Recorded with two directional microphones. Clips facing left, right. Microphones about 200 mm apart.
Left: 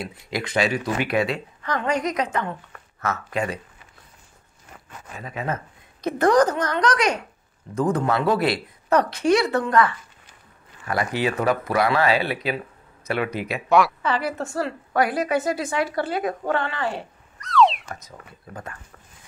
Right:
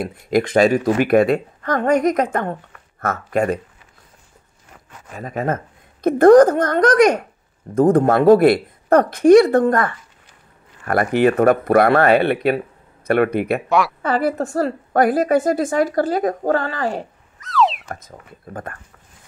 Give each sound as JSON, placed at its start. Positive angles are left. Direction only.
{"t": 0.0, "sound": "speech", "side_deg": -50}
{"t": 5.2, "sound": "speech", "side_deg": -45}
{"t": 13.7, "sound": "a woman's voice", "side_deg": 0}
{"t": 14.0, "sound": "speech", "side_deg": -50}
{"t": 17.4, "sound": "a sound", "side_deg": 0}
{"t": 17.8, "sound": "speech", "side_deg": -50}